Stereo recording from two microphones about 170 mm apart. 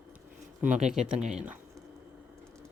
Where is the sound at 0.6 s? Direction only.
5° right (ahead or behind).